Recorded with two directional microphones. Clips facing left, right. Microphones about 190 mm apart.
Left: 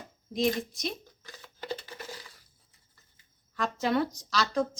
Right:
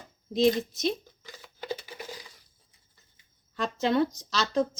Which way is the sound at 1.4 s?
10° right (ahead or behind).